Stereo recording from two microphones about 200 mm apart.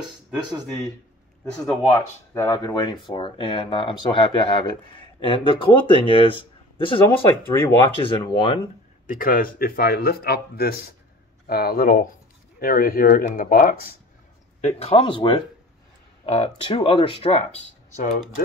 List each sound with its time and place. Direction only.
0.0 s speech: centre (ahead or behind)
1.9 s speech: 15° left (ahead or behind)
9.0 s speech: 45° left (ahead or behind)
14.6 s speech: 30° left (ahead or behind)